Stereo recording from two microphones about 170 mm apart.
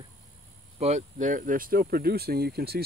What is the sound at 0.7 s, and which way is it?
Speech, 40° right (ahead or behind).